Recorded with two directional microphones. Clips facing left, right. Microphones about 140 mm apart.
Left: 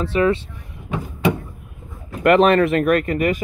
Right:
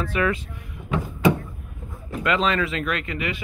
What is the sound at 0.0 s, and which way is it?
Speech, 30° left (ahead or behind).